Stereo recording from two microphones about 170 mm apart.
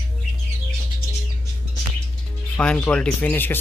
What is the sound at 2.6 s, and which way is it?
Speech, 5° left (ahead or behind).